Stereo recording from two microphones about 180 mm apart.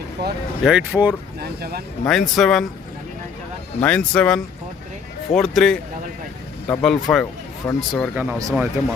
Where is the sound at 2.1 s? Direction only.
Centre (ahead or behind).